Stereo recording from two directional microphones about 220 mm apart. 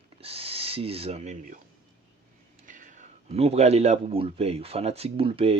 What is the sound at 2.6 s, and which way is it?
Speech, 35° right (ahead or behind).